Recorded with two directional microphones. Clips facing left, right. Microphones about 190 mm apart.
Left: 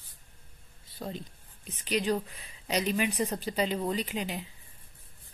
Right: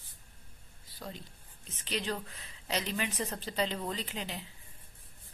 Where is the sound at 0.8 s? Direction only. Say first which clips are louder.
Left 6 dB; 25° left (ahead or behind).